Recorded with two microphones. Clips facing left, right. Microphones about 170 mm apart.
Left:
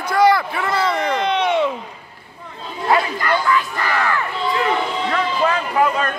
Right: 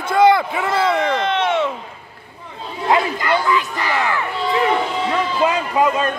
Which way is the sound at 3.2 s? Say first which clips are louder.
Right 1 dB; 20° right (ahead or behind).